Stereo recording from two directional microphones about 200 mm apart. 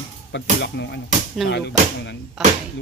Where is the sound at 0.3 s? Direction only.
60° left (ahead or behind).